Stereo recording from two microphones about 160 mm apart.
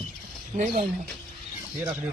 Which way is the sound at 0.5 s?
55° right (ahead or behind).